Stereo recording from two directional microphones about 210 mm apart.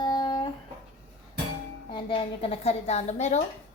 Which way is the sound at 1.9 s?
25° left (ahead or behind).